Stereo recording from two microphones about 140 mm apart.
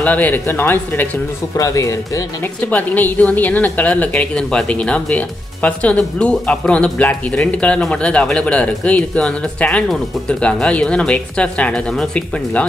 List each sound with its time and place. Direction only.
0.0 s a woman's voice: 10° left (ahead or behind)
2.7 s a woman's voice: 10° left (ahead or behind)